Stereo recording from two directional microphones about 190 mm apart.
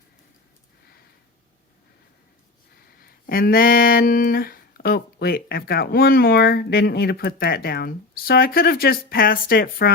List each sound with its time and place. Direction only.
3.0 s speech: 50° left (ahead or behind)